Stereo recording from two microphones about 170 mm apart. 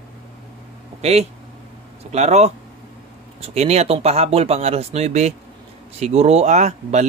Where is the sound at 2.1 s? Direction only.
40° right (ahead or behind).